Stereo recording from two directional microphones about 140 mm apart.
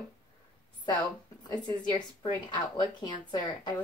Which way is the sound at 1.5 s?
30° left (ahead or behind).